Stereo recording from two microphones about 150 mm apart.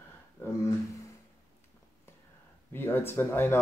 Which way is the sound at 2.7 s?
15° left (ahead or behind).